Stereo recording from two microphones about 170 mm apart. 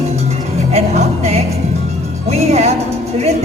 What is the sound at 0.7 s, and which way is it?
Music, 40° right (ahead or behind).